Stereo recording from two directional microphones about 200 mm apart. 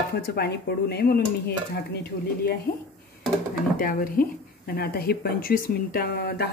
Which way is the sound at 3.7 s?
45° left (ahead or behind).